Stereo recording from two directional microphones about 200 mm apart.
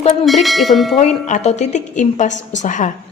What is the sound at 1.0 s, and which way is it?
A woman's voice, 35° left (ahead or behind).